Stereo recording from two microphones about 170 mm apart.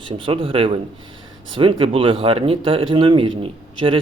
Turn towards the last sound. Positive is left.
turn(degrees=-30)  # may be behind; listen again after turning